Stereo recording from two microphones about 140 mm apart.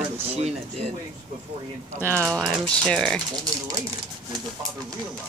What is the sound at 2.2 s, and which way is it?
Speech, 10° right (ahead or behind).